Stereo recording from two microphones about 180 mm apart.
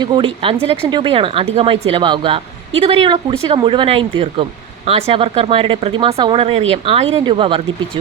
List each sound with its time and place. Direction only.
0.0 s speech: 25° right (ahead or behind)